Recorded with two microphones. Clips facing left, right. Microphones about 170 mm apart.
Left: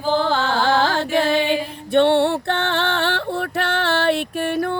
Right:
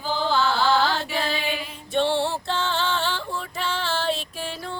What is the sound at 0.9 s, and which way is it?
Music, 75° left (ahead or behind).